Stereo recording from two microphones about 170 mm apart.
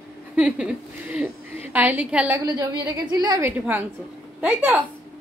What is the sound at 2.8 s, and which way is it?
Speech, 25° right (ahead or behind).